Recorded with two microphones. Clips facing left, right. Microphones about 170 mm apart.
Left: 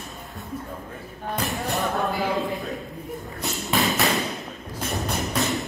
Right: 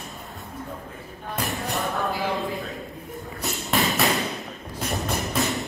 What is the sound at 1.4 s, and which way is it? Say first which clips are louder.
Music: left 1 dB; centre (ahead or behind).